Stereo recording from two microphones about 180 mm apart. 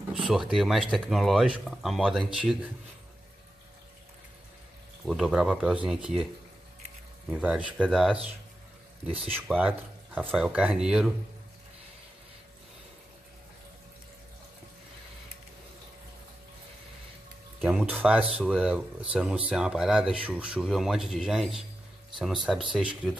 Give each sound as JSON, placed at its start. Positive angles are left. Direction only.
{"t": 0.3, "sound": "speech", "side_deg": 0}
{"t": 5.0, "sound": "speech", "side_deg": 0}
{"t": 7.2, "sound": "speech", "side_deg": -5}
{"t": 9.0, "sound": "speech", "side_deg": -30}
{"t": 9.5, "sound": "speech", "side_deg": -5}
{"t": 17.6, "sound": "speech", "side_deg": -5}